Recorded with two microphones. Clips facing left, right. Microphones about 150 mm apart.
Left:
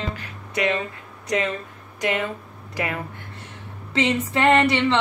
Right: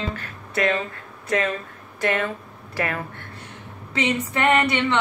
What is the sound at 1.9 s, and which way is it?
Speech, 15° left (ahead or behind).